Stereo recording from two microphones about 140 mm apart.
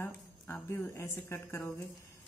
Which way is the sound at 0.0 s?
20° left (ahead or behind).